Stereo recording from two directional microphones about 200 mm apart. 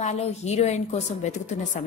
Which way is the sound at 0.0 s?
35° left (ahead or behind).